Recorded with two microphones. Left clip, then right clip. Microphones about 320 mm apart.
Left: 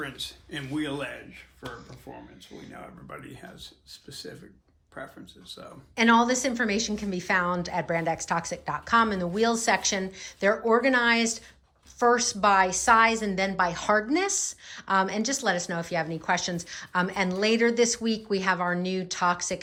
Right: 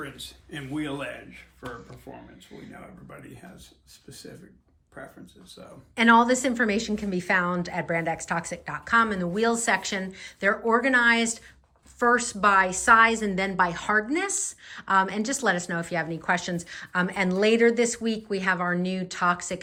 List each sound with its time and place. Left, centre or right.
0.0 s speech: centre
0.8 s a woman's voice: centre
5.0 s a woman's voice: centre